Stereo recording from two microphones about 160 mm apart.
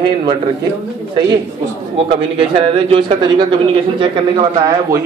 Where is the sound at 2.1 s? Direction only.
35° right (ahead or behind).